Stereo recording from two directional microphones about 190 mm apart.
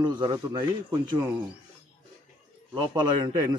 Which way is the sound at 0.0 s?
25° right (ahead or behind).